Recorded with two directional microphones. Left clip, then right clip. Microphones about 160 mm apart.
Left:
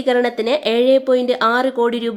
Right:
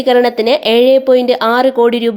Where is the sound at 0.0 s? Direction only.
20° right (ahead or behind).